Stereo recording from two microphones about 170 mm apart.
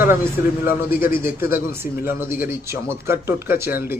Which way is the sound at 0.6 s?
15° right (ahead or behind).